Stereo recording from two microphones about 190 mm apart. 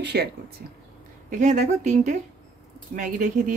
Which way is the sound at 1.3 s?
40° right (ahead or behind).